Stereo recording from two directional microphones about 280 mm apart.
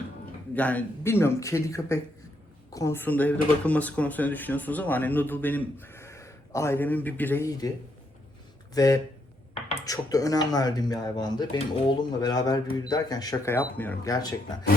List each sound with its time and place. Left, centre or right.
0.5 s speech: centre
8.7 s speech: centre